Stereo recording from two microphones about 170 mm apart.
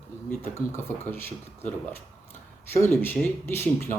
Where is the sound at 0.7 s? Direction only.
15° left (ahead or behind).